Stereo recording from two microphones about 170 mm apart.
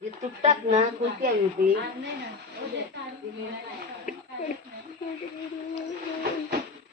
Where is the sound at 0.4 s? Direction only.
40° right (ahead or behind).